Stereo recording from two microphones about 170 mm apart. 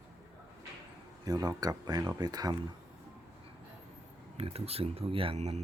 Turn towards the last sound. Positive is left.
turn(degrees=-40)  # may be behind; listen again after turning